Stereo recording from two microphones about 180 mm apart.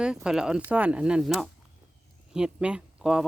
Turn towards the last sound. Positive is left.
turn(degrees=-5)  # may be behind; listen again after turning